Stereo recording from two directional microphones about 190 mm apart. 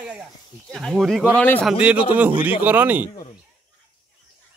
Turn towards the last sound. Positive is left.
turn(degrees=-10)  # may be behind; listen again after turning